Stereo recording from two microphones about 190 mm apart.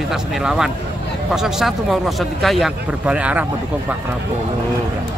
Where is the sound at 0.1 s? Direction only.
5° right (ahead or behind).